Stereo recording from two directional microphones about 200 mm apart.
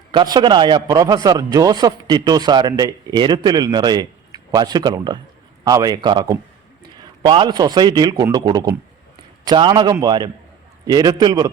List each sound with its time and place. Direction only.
0.1 s speech: 20° right (ahead or behind)